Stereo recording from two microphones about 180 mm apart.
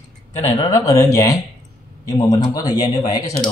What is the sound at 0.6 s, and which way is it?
A man's voice, 15° left (ahead or behind).